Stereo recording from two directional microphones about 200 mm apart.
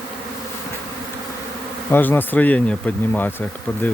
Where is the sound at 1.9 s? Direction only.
10° left (ahead or behind).